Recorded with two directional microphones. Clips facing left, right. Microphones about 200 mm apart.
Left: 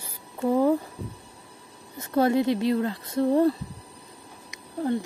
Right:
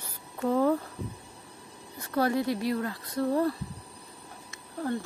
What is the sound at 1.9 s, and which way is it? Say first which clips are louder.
Speech: left 5 dB; 20° left (ahead or behind).